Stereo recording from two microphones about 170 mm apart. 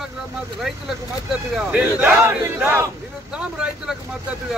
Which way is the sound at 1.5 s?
10° right (ahead or behind).